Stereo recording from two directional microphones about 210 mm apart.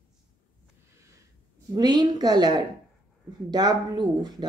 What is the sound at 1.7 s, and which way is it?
Speech, 20° right (ahead or behind).